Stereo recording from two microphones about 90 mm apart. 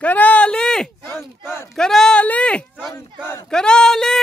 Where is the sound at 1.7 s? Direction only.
5° left (ahead or behind).